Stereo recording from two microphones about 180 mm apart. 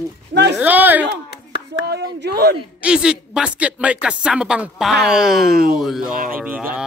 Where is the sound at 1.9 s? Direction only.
70° right (ahead or behind).